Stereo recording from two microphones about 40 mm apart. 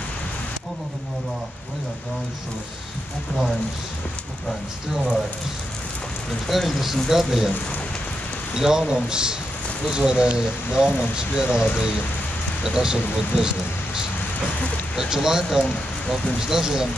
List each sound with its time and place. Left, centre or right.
6.5 s speech: centre
8.5 s speech: centre
15.0 s speech: centre